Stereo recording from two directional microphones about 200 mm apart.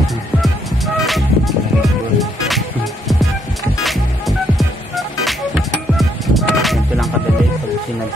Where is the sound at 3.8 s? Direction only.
Centre (ahead or behind).